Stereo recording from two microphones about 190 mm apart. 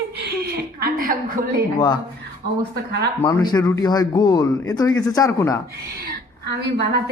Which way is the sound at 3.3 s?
20° left (ahead or behind).